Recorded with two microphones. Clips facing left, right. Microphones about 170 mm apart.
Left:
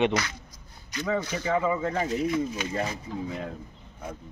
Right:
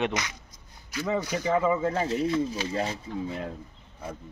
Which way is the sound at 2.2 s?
30° right (ahead or behind).